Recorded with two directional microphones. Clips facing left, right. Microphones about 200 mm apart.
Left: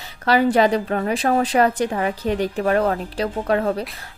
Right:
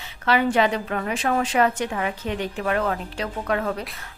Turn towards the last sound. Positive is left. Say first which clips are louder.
# left 5 dB
turn(degrees=35)  # may be behind; listen again after turning